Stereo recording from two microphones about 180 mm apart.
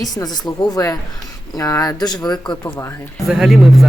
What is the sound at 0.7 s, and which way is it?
Speech, 20° left (ahead or behind).